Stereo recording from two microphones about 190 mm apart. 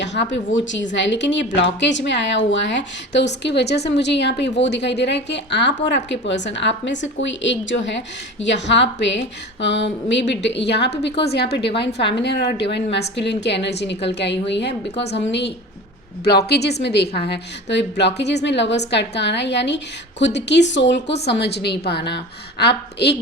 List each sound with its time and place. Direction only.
0.0 s a woman's voice: 70° left (ahead or behind)